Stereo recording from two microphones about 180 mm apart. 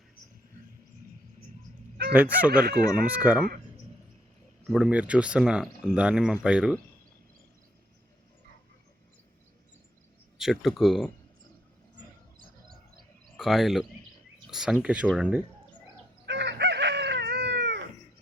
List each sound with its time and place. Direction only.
2.1 s speech: 10° right (ahead or behind)
2.5 s speech: 55° right (ahead or behind)
2.9 s speech: 5° right (ahead or behind)
4.7 s speech: 5° right (ahead or behind)
10.3 s speech: centre (ahead or behind)
13.3 s speech: centre (ahead or behind)
16.2 s chicken: 70° right (ahead or behind)